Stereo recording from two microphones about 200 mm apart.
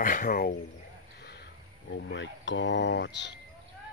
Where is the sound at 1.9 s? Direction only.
60° left (ahead or behind).